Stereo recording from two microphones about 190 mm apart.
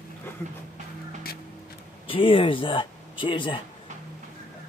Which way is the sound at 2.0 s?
30° left (ahead or behind).